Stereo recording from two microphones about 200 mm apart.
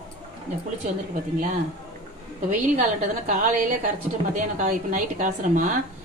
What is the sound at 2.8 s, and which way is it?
A woman's voice, 40° right (ahead or behind).